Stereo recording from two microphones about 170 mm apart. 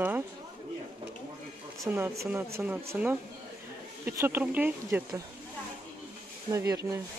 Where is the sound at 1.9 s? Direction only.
15° right (ahead or behind).